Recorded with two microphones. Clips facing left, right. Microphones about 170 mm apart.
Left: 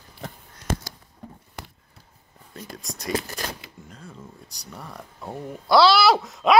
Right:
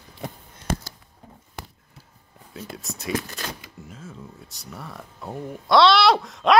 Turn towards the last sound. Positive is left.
turn(degrees=0)  # may be behind; listen again after turning